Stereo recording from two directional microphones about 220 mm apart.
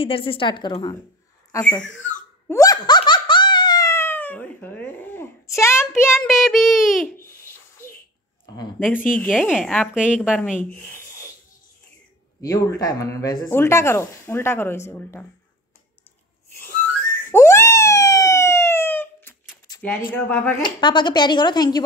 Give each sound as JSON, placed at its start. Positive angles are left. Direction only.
{"t": 0.0, "sound": "speech", "side_deg": 25}
{"t": 2.4, "sound": "laughter", "side_deg": 15}
{"t": 6.1, "sound": "a woman's voice", "side_deg": 0}
{"t": 8.5, "sound": "a woman's voice", "side_deg": 10}
{"t": 10.5, "sound": "speech", "side_deg": 35}
{"t": 12.4, "sound": "speech", "side_deg": 15}
{"t": 16.6, "sound": "a sound", "side_deg": 10}
{"t": 20.2, "sound": "speech", "side_deg": 10}